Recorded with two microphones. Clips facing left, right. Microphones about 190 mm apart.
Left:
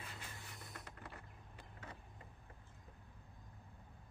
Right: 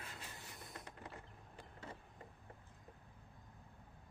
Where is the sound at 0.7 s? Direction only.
20° right (ahead or behind).